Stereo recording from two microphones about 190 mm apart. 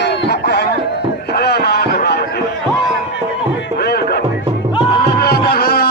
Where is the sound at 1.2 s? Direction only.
60° left (ahead or behind).